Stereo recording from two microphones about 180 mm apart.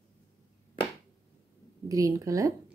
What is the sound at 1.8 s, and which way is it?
Speech, 20° right (ahead or behind).